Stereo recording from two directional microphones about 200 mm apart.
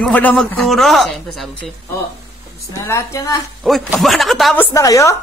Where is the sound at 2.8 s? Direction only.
15° left (ahead or behind).